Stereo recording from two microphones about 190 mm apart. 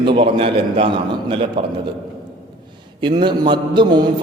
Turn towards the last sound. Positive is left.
turn(degrees=-25)  # may be behind; listen again after turning